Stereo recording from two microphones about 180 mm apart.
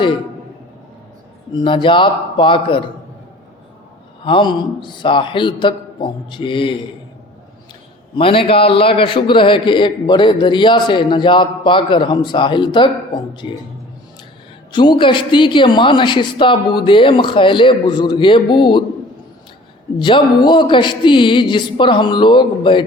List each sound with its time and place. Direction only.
1.5 s a man's voice: 25° left (ahead or behind)
4.2 s a man's voice: 30° left (ahead or behind)
8.1 s a man's voice: 30° left (ahead or behind)
14.7 s a man's voice: 25° left (ahead or behind)
20.0 s a man's voice: 25° left (ahead or behind)